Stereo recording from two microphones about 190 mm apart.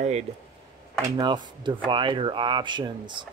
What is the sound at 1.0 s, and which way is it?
Speech, 20° right (ahead or behind).